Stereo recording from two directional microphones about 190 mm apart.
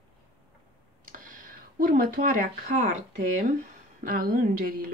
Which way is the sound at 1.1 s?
45° right (ahead or behind).